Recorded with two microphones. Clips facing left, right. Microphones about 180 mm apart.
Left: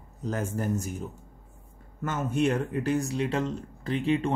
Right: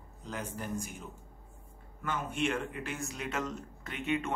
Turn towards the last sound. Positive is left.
turn(degrees=30)  # may be behind; listen again after turning